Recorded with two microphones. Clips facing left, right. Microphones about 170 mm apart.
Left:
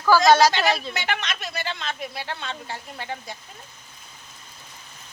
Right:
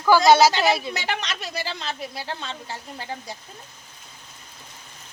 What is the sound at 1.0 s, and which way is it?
Speech, 35° right (ahead or behind).